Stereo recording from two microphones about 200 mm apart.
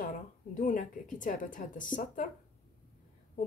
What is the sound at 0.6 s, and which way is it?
A woman's voice, 40° left (ahead or behind).